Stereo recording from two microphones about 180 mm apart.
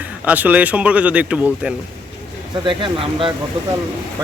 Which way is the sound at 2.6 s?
30° right (ahead or behind).